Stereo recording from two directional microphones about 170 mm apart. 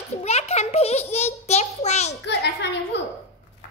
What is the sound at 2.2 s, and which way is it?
Speech, 80° left.